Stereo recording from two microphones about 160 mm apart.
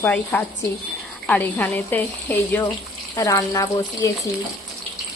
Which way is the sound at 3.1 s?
25° left (ahead or behind).